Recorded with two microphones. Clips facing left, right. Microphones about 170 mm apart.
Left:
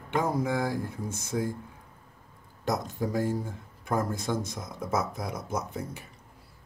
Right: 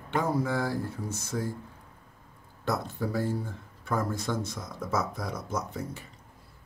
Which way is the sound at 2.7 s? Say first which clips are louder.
Left 1 dB; 15° left (ahead or behind).